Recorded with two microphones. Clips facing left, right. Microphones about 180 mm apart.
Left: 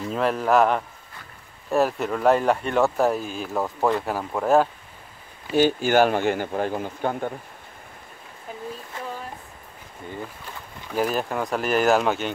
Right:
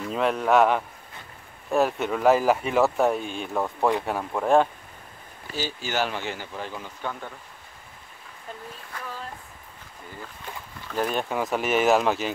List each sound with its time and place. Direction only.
0.1 s speech: centre (ahead or behind)
5.5 s speech: 55° left (ahead or behind)
8.9 s a sound: 25° left (ahead or behind)
10.9 s speech: 5° left (ahead or behind)